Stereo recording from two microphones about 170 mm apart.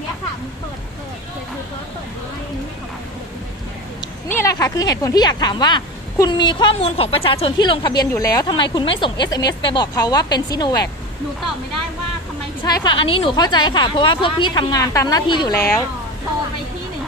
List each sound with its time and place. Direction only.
4.3 s speech: 15° left (ahead or behind)
12.6 s speech: 25° left (ahead or behind)
15.5 s a woman's voice: 15° left (ahead or behind)